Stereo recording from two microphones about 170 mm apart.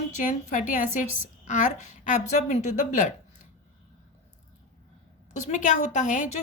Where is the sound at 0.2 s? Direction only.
50° left (ahead or behind).